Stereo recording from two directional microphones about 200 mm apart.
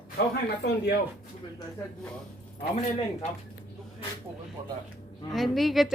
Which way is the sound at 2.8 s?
30° left (ahead or behind).